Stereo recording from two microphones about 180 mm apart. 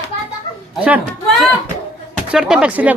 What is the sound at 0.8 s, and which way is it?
Speech, 10° right (ahead or behind).